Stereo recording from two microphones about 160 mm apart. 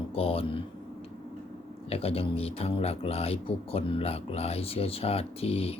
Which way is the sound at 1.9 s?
35° left (ahead or behind).